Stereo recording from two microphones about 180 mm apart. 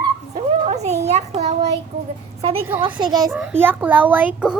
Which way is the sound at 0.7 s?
40° right (ahead or behind).